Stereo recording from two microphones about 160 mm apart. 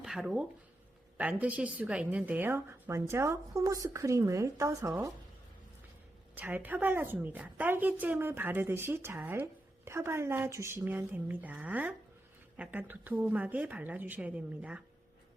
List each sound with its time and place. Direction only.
0.0 s a woman's voice: 5° right (ahead or behind); by 5.1 s 20° right (ahead or behind)
6.3 s a woman's voice: 10° right (ahead or behind)